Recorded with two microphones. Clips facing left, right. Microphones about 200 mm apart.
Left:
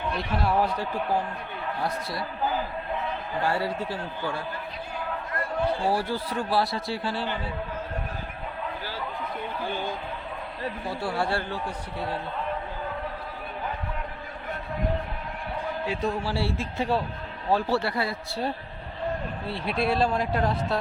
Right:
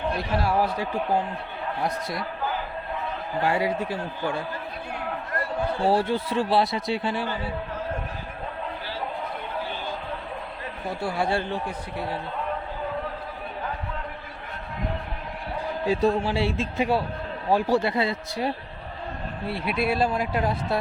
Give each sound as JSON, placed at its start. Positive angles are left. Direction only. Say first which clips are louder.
{"t": 0.4, "sound": "speech", "louder": "left 1 dB", "side_deg": -10}
{"t": 1.8, "sound": "a man's voice", "louder": "right 2 dB", "side_deg": -20}
{"t": 3.4, "sound": "speech", "louder": "right 3 dB", "side_deg": -15}
{"t": 5.8, "sound": "a man's voice", "louder": "right 4 dB", "side_deg": -25}
{"t": 11.0, "sound": "speech", "louder": "right 2 dB", "side_deg": -15}
{"t": 15.9, "sound": "speech", "louder": "right 8 dB", "side_deg": -35}
{"t": 16.2, "sound": "a man's voice", "louder": "right 3 dB", "side_deg": -20}
{"t": 19.8, "sound": "speech", "louder": "even", "side_deg": -5}